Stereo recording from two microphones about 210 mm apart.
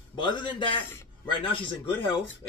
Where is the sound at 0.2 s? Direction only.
20° left (ahead or behind).